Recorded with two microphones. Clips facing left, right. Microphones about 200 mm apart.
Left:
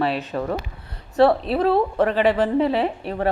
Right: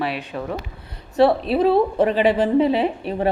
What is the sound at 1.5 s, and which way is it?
A woman's voice, 15° right (ahead or behind).